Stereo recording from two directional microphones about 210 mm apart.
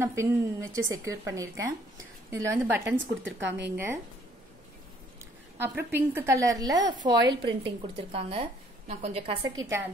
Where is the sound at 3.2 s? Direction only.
60° right (ahead or behind).